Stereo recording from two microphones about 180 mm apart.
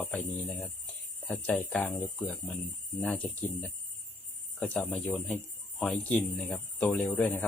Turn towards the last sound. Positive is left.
turn(degrees=5)  # may be behind; listen again after turning